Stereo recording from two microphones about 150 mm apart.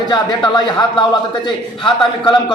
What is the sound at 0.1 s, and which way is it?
A man's voice, 30° left (ahead or behind).